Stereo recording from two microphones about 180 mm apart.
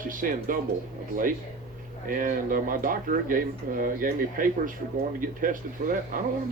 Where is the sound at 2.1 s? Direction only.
50° right (ahead or behind).